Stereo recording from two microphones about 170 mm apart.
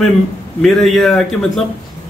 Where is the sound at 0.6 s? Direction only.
Centre (ahead or behind).